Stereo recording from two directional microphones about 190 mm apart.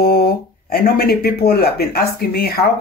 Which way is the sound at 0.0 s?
50° left (ahead or behind).